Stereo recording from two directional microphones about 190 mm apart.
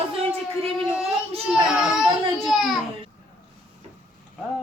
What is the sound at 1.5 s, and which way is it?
A child's voice, centre (ahead or behind).